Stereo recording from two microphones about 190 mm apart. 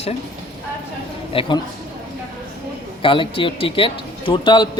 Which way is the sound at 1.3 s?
25° left (ahead or behind).